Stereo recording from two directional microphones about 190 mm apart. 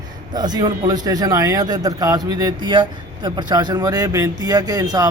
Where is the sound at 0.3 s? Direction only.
20° right (ahead or behind).